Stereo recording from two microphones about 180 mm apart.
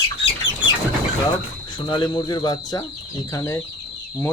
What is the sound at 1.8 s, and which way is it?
Speech, 25° left (ahead or behind).